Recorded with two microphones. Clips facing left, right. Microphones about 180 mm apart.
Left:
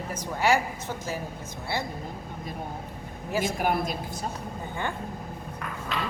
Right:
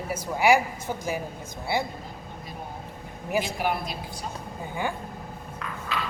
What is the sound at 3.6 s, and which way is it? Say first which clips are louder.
Speech: left 2 dB; 45° left (ahead or behind).